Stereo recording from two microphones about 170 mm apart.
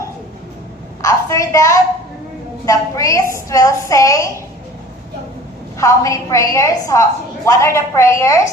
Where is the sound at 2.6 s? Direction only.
20° left (ahead or behind).